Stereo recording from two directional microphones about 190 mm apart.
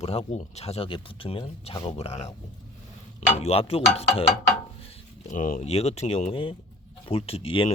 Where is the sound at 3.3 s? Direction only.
35° left (ahead or behind).